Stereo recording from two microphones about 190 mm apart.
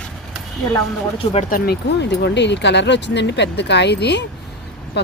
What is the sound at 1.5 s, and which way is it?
Speech, 50° left (ahead or behind).